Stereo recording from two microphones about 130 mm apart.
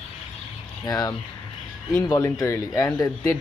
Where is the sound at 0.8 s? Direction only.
30° left (ahead or behind).